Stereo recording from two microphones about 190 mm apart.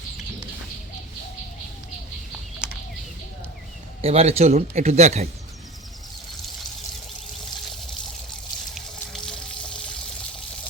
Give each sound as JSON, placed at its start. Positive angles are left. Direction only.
{"t": 2.6, "sound": "a sound", "side_deg": -5}
{"t": 4.0, "sound": "speech", "side_deg": -35}
{"t": 8.7, "sound": "water", "side_deg": 0}